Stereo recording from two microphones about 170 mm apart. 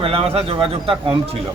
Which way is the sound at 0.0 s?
35° right (ahead or behind).